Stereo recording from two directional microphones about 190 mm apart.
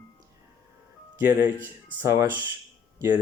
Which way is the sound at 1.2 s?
10° right (ahead or behind).